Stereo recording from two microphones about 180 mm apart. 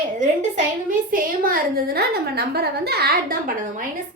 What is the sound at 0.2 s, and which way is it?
A woman's voice, 45° right (ahead or behind).